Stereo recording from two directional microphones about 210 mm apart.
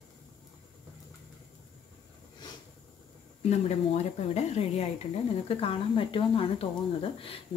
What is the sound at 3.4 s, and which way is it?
Speech, 30° left (ahead or behind).